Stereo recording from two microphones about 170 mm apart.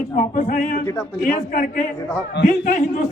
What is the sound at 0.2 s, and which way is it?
A man's voice, 50° left (ahead or behind).